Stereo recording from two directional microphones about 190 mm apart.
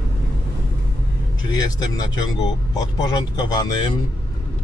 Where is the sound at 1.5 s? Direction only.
20° left (ahead or behind).